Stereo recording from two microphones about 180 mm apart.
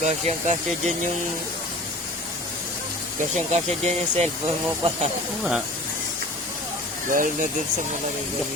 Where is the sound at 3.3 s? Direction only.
40° right (ahead or behind).